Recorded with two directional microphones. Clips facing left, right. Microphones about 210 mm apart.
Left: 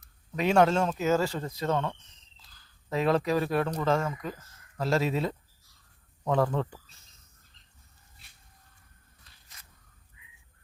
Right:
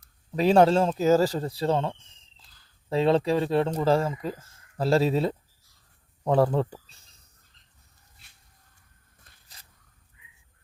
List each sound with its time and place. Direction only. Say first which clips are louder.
0.3 s speech: right 4 dB; 35° right (ahead or behind)
9.3 s crow: right 3 dB; 50° right (ahead or behind)